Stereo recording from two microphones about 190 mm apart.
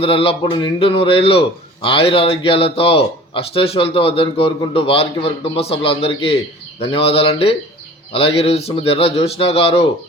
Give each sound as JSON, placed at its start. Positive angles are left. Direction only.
{"t": 0.0, "sound": "a man's voice", "side_deg": 30}